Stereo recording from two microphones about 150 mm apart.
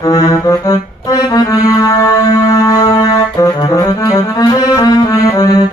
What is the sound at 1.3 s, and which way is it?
Music, 25° left (ahead or behind).